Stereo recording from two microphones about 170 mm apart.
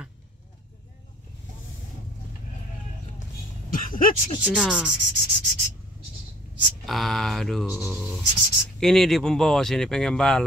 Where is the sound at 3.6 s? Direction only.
55° left (ahead or behind).